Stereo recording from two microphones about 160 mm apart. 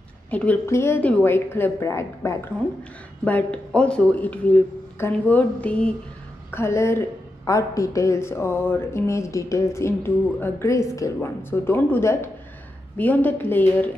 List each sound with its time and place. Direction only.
0.3 s speech: 10° left (ahead or behind)